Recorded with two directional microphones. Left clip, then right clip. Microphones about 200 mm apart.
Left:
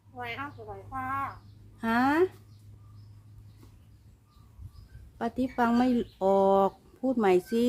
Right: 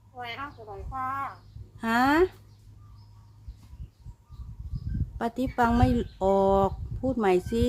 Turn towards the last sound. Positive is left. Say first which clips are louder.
# even
turn(degrees=0)  # may be behind; listen again after turning